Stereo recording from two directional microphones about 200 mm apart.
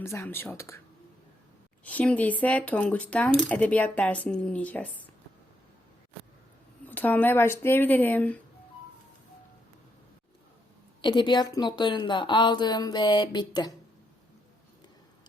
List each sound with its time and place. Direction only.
0.0 s speech: 15° left (ahead or behind)
1.8 s speech: 5° left (ahead or behind)
6.8 s speech: 10° left (ahead or behind)
11.0 s a woman's voice: 25° left (ahead or behind)